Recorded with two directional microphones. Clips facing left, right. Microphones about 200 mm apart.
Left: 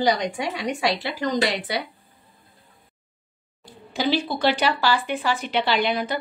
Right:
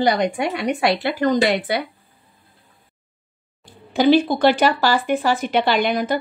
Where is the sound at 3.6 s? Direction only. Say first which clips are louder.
Right 8 dB; 55° right (ahead or behind).